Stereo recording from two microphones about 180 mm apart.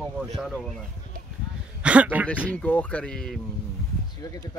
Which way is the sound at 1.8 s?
10° right (ahead or behind).